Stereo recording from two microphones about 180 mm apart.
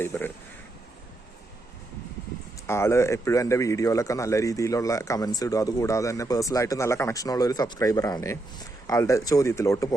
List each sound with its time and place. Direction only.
0.0 s speech: 10° left (ahead or behind)
2.6 s speech: 15° left (ahead or behind)